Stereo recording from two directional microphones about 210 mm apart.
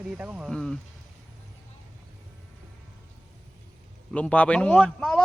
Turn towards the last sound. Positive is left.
turn(degrees=5)  # may be behind; listen again after turning